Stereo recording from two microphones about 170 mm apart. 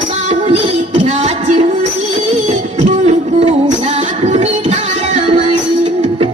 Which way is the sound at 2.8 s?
40° right (ahead or behind).